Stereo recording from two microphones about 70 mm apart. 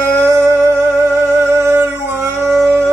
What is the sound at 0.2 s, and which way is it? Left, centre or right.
Music, right.